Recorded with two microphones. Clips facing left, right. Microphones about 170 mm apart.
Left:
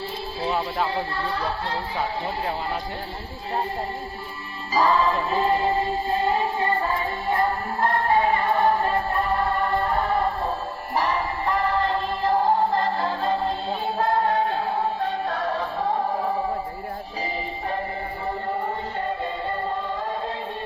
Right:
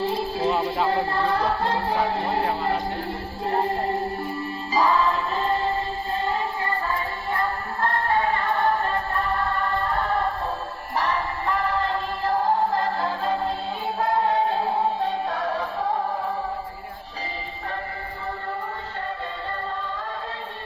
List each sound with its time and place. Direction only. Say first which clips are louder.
0.3 s music: even; centre (ahead or behind)
0.9 s speech: right 5 dB; 55° right (ahead or behind)
4.9 s music: left 1 dB; centre (ahead or behind)
15.3 s music: even; 10° right (ahead or behind)